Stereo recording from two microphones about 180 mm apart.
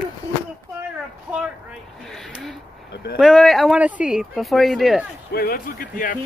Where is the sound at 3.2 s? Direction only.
Centre (ahead or behind).